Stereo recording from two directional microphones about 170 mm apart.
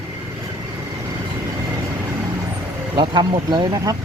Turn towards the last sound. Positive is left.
turn(degrees=-20)  # may be behind; listen again after turning